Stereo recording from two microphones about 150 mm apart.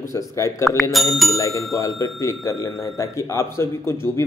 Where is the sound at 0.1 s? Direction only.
20° left (ahead or behind).